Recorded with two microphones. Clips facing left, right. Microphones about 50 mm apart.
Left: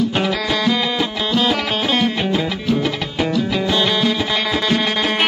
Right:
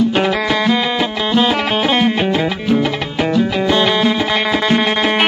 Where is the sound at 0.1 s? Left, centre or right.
Right.